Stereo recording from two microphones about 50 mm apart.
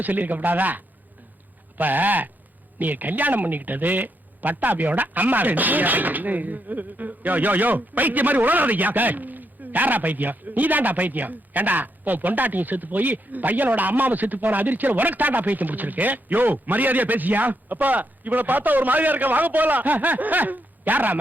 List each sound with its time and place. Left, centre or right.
0.0 s speech: right
1.8 s speech: right